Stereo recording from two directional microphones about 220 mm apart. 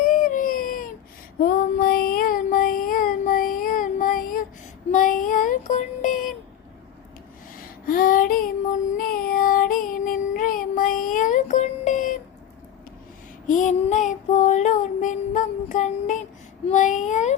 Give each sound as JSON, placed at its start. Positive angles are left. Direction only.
{"t": 0.0, "sound": "baby cry", "side_deg": 35}
{"t": 1.4, "sound": "child singing", "side_deg": 40}
{"t": 7.5, "sound": "child singing", "side_deg": 40}
{"t": 13.5, "sound": "child singing", "side_deg": 35}